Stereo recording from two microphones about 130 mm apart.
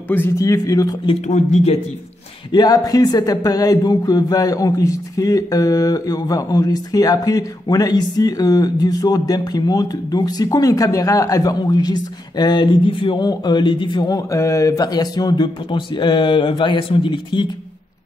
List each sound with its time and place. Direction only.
0.1 s speech: 15° left (ahead or behind)
0.5 s speech: 25° left (ahead or behind)
1.2 s speech: 60° left (ahead or behind)
2.5 s speech: 30° left (ahead or behind)